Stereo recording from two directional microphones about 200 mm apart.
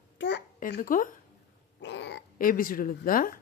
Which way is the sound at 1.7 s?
60° left (ahead or behind).